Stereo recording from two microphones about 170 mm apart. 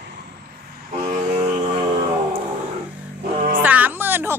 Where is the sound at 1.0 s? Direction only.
35° right (ahead or behind).